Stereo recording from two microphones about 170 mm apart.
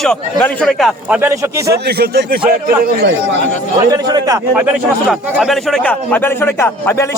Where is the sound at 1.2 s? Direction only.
15° right (ahead or behind).